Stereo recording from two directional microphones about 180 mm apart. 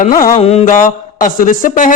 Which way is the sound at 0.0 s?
50° left (ahead or behind).